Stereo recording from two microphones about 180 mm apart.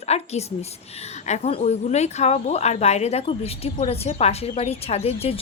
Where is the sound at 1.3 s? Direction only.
35° left (ahead or behind).